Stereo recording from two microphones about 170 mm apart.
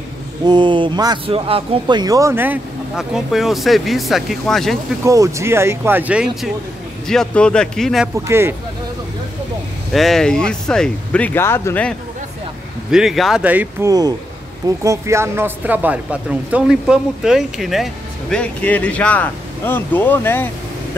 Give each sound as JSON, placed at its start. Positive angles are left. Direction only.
{"t": 0.5, "sound": "speech", "side_deg": -30}
{"t": 5.0, "sound": "speech", "side_deg": -20}
{"t": 7.1, "sound": "speech", "side_deg": 5}
{"t": 8.3, "sound": "speech", "side_deg": -15}
{"t": 9.9, "sound": "speech", "side_deg": 0}
{"t": 12.9, "sound": "speech", "side_deg": 0}